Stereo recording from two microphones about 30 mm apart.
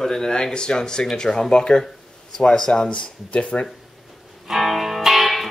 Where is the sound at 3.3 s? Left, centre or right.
Left.